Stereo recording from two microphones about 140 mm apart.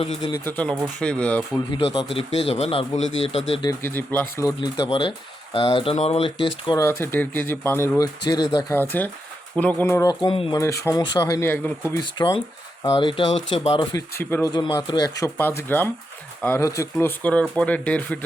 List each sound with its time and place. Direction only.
0.4 s speech: 10° left (ahead or behind)
1.7 s speech: 40° left (ahead or behind)
3.8 s speech: 15° left (ahead or behind)
4.9 s speech: 35° left (ahead or behind)
6.7 s speech: 15° left (ahead or behind)
7.9 s speech: 25° left (ahead or behind)
8.7 s speech: 15° left (ahead or behind)
10.1 s speech: 35° left (ahead or behind)
10.5 s speech: 20° left (ahead or behind)
12.1 s speech: 35° left (ahead or behind)
14.2 s speech: 15° left (ahead or behind)
14.5 s speech: 30° left (ahead or behind)
15.4 s speech: 15° left (ahead or behind)